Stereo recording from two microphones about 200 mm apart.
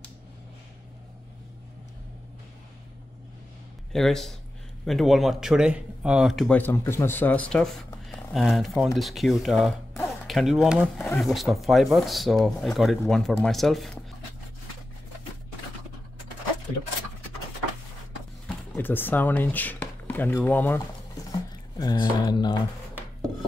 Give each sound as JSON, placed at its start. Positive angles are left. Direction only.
{"t": 3.9, "sound": "speech", "side_deg": 0}
{"t": 18.8, "sound": "speech", "side_deg": 10}